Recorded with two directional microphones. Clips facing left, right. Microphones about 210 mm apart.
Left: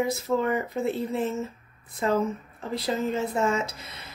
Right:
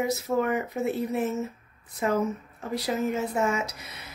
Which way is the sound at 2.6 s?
15° right (ahead or behind).